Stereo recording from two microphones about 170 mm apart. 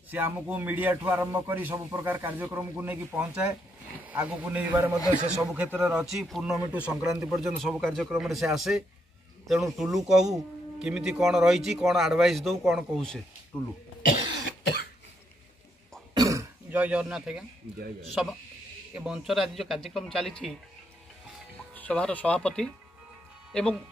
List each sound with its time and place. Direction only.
0.1 s speech: 10° right (ahead or behind)
16.2 s throat clearing: 20° right (ahead or behind)
16.8 s speech: 5° right (ahead or behind)
18.9 s speech: 5° right (ahead or behind)
21.7 s speech: 10° left (ahead or behind)